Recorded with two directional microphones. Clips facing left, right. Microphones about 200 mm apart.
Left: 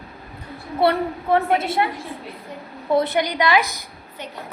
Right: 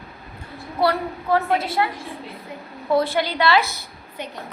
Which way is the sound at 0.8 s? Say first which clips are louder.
Left 2 dB; 25° left (ahead or behind).